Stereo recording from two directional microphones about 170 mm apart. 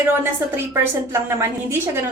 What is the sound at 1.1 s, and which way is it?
Speech, 15° right (ahead or behind).